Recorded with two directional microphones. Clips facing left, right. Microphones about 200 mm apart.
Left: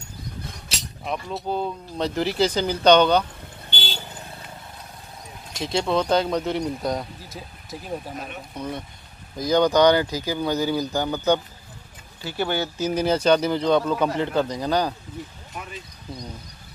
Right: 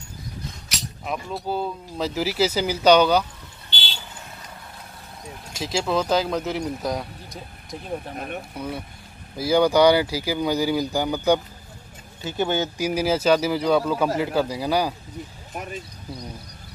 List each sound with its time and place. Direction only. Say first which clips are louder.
1.0 s speech: left 1 dB; 5° right (ahead or behind)
3.7 s vehicle: left 4 dB; 45° left (ahead or behind)
5.5 s speech: left 1 dB; 5° right (ahead or behind)
8.5 s speech: even; 5° right (ahead or behind)
15.5 s speech: right 5 dB; 45° right (ahead or behind)